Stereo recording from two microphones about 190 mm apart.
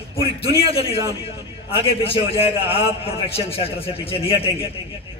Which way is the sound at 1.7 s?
30° left (ahead or behind).